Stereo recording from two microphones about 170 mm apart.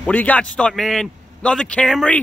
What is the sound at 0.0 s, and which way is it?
A man's voice, 10° left (ahead or behind).